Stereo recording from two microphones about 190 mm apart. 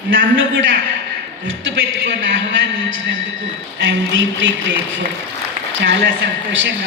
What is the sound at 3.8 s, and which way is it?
Speech, 75° right (ahead or behind).